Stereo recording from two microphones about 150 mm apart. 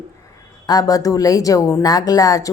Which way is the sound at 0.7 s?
25° left (ahead or behind).